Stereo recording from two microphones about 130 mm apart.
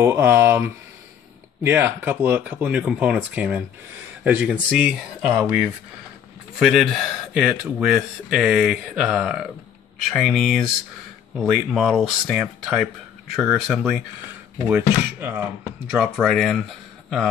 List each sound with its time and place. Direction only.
0.0 s speech: 20° right (ahead or behind)
6.6 s speech: 5° right (ahead or behind)
14.7 s speech: 15° right (ahead or behind)
15.9 s speech: centre (ahead or behind)